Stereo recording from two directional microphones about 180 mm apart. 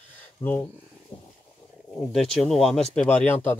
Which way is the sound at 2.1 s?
5° left (ahead or behind).